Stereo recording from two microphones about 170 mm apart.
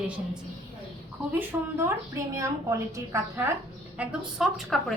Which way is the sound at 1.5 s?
20° right (ahead or behind).